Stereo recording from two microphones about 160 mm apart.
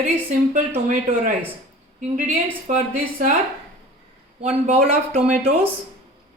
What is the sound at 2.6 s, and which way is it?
Speech, 55° right (ahead or behind).